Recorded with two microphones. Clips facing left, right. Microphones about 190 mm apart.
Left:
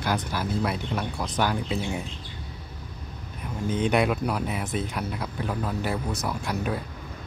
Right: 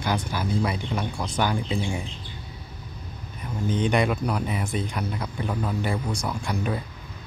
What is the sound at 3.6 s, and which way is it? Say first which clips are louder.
Speech: even; 5° left (ahead or behind).